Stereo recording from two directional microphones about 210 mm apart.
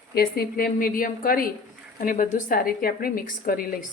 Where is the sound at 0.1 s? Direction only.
45° left (ahead or behind).